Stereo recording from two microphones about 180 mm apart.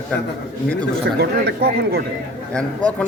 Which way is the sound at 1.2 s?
65° right (ahead or behind).